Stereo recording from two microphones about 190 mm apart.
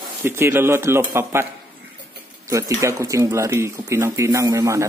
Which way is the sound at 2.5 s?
15° right (ahead or behind).